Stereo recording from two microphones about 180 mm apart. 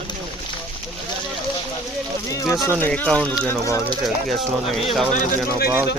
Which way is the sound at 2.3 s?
20° left (ahead or behind).